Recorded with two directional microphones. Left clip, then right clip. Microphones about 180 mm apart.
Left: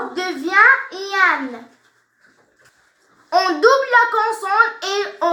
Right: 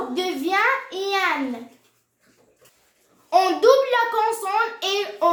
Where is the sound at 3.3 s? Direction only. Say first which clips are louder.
Left 2 dB; 10° left (ahead or behind).